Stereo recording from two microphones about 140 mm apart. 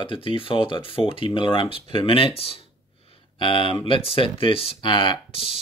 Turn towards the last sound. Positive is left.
turn(degrees=40)  # may be behind; listen again after turning